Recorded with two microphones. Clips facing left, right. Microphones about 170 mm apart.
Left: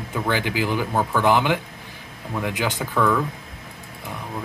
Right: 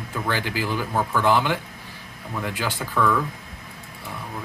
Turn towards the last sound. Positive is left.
turn(degrees=15)  # may be behind; listen again after turning